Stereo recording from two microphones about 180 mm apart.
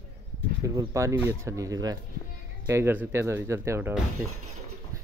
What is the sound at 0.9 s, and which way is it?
Speech, 15° right (ahead or behind).